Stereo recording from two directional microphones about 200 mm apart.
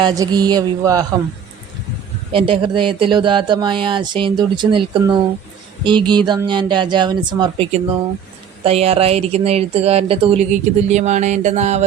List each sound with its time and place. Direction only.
0.0 s speech: 20° right (ahead or behind)
2.3 s speech: 25° right (ahead or behind)